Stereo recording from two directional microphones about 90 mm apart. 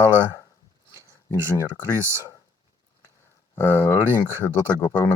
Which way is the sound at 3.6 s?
25° left (ahead or behind).